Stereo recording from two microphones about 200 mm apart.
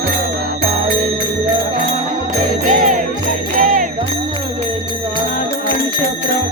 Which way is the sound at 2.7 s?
40° right (ahead or behind).